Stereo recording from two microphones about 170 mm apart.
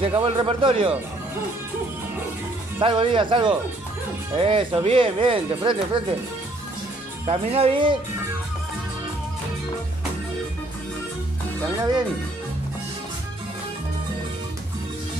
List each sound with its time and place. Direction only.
0.1 s speech: 30° right (ahead or behind)
2.8 s speech: 30° right (ahead or behind)
7.2 s speech: 35° right (ahead or behind)